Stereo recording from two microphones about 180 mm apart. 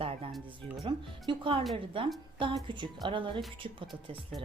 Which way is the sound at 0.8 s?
30° right (ahead or behind).